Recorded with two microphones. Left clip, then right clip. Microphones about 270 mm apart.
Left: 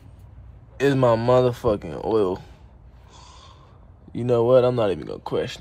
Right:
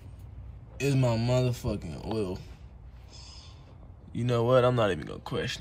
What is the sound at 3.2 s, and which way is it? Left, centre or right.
Snort, left.